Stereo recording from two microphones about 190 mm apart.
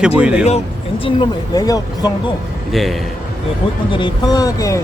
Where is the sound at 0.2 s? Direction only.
5° right (ahead or behind).